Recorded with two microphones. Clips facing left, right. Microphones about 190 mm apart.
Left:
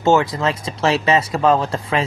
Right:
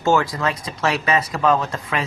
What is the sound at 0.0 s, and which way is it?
Speech, 20° left (ahead or behind).